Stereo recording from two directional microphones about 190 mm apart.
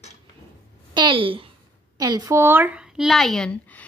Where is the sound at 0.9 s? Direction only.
25° right (ahead or behind).